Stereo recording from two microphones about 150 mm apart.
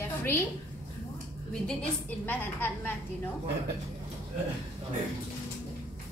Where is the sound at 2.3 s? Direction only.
15° left (ahead or behind).